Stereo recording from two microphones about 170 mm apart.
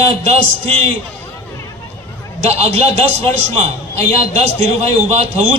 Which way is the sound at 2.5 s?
40° right (ahead or behind).